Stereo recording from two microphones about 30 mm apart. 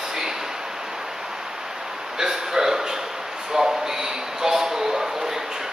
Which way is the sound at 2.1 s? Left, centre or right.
Centre.